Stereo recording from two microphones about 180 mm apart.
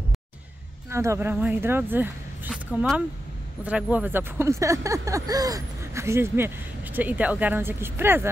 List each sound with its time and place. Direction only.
0.8 s speech: 15° right (ahead or behind)
2.5 s speech: centre (ahead or behind)